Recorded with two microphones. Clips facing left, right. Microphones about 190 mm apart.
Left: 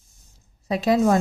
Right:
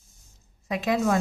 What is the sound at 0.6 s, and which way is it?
Speech, 35° left (ahead or behind).